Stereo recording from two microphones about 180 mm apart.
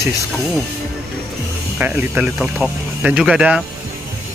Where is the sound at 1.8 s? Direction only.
10° right (ahead or behind).